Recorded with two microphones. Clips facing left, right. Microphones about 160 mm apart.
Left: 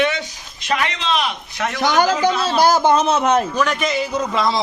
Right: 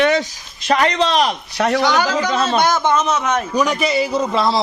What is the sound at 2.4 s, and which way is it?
Speech, 30° left (ahead or behind).